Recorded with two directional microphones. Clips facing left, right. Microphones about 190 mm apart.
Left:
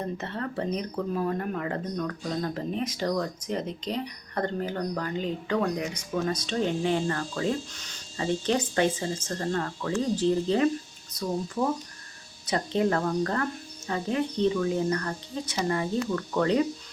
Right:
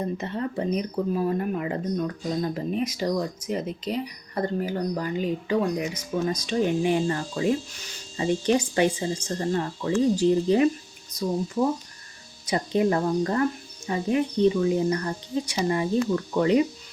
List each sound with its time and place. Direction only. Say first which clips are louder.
0.0 s speech: right 4 dB; 10° right (ahead or behind)
12.5 s speech: right 3 dB; 15° right (ahead or behind)